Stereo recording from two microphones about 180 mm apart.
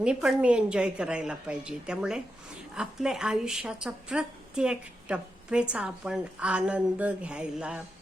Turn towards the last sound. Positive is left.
turn(degrees=-5)  # may be behind; listen again after turning